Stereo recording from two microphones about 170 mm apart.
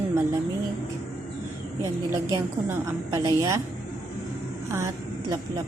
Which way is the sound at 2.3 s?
20° right (ahead or behind).